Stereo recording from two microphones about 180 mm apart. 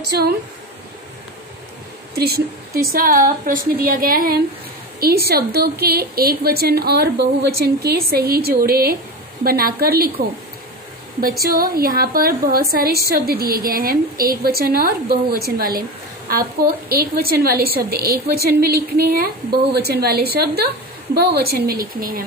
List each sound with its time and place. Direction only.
2.1 s a woman's voice: 60° right (ahead or behind)